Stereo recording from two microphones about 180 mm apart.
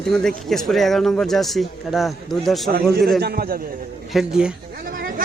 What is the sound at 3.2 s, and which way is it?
Speech, 60° right (ahead or behind).